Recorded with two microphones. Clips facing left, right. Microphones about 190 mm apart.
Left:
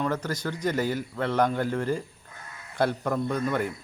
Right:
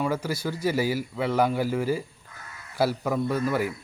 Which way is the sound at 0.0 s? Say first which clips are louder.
Right 1 dB; 10° right (ahead or behind).